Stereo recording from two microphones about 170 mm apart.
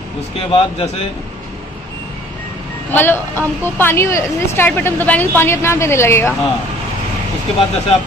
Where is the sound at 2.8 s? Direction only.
10° left (ahead or behind).